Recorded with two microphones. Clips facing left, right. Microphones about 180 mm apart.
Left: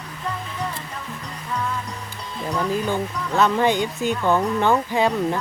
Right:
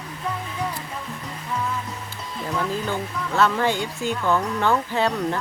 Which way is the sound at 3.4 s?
15° left (ahead or behind).